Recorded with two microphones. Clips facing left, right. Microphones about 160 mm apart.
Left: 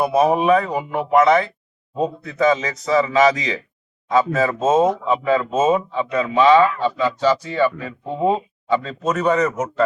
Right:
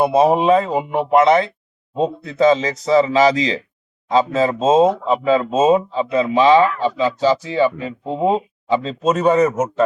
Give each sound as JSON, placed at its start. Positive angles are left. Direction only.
{"t": 0.0, "sound": "speech", "side_deg": -25}